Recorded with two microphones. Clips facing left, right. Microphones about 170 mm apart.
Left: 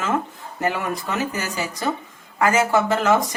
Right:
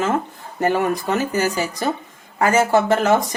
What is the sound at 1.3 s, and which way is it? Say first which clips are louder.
Speech: right 6 dB; 35° right (ahead or behind).